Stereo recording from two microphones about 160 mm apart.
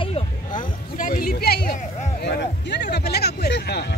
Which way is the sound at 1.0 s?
65° left (ahead or behind).